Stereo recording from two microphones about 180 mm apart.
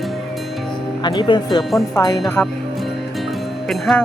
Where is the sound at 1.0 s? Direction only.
25° left (ahead or behind).